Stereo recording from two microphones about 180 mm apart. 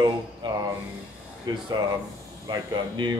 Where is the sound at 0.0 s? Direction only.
25° right (ahead or behind).